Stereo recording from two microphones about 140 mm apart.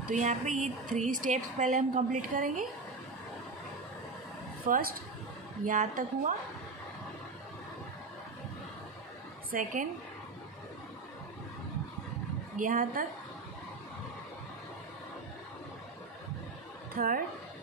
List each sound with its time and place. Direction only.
0.1 s a woman's voice: 60° right (ahead or behind)
4.6 s a woman's voice: 90° right
5.7 s speech: 65° right (ahead or behind)
9.5 s speech: 70° right (ahead or behind)
12.5 s speech: 75° right (ahead or behind)
16.9 s a woman's voice: 90° right